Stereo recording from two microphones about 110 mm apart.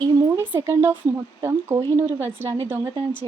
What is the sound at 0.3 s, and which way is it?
A woman's voice, 20° right (ahead or behind).